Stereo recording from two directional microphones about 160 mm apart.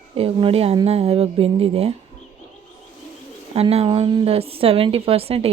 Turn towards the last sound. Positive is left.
turn(degrees=-40)  # may be behind; listen again after turning